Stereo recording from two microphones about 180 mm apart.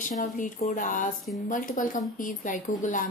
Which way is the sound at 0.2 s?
45° left (ahead or behind).